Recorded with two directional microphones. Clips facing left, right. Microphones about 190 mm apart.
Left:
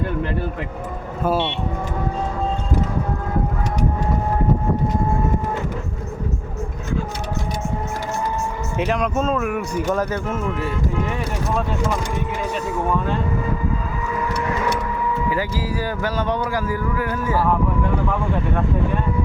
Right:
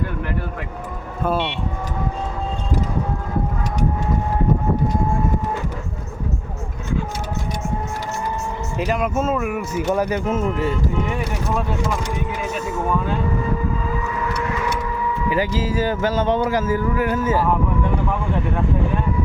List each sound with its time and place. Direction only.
8.8 s speech: 5° right (ahead or behind)
15.3 s speech: 20° right (ahead or behind)